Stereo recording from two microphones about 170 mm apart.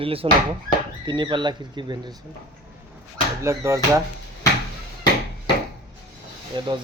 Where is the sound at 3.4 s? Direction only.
15° right (ahead or behind).